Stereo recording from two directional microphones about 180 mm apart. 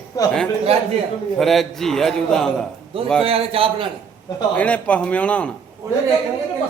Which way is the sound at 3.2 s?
35° right (ahead or behind).